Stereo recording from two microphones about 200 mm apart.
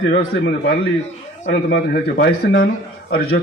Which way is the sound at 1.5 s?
55° left (ahead or behind).